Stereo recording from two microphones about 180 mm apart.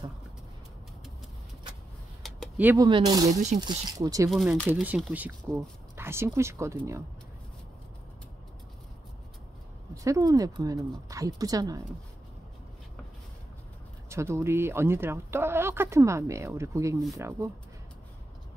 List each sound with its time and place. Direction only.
2.5 s speech: 10° right (ahead or behind)
2.9 s a woman's voice: 20° right (ahead or behind)
4.3 s speech: centre (ahead or behind); by 6.8 s 15° right (ahead or behind)
10.0 s a woman's voice: 20° right (ahead or behind)
14.0 s speech: 15° right (ahead or behind)